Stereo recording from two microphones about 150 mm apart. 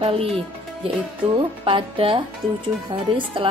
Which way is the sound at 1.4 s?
35° right (ahead or behind).